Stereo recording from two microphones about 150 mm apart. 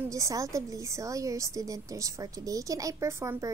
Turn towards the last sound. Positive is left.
turn(degrees=-20)  # may be behind; listen again after turning